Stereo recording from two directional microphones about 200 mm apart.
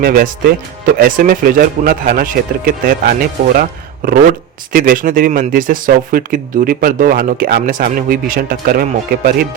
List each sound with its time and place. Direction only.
0.0 s speech: 45° right (ahead or behind)